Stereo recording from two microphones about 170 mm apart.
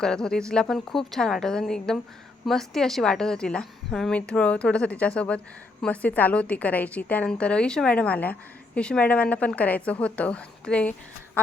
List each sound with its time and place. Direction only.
0.0 s a woman's voice: 5° left (ahead or behind)